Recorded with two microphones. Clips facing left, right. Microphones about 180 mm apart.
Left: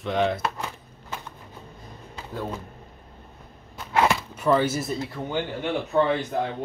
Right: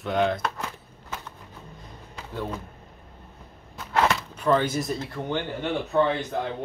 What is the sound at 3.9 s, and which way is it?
Speech, 10° left (ahead or behind).